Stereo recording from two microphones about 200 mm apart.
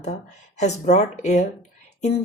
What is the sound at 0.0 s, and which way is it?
A woman's voice, 35° left (ahead or behind).